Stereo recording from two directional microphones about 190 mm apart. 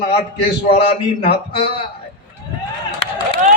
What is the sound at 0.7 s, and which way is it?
A man's voice, 30° left (ahead or behind).